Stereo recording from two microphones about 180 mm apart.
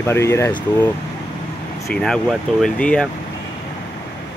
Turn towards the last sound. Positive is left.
turn(degrees=5)  # may be behind; listen again after turning